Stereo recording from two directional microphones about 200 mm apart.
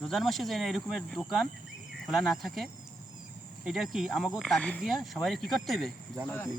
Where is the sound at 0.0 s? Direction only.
Centre (ahead or behind).